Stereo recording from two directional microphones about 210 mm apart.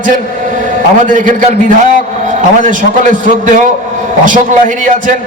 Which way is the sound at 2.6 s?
40° right (ahead or behind).